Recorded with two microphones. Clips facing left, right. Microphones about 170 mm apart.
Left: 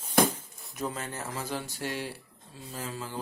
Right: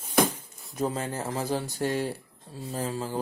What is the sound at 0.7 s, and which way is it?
Speech, 30° right (ahead or behind).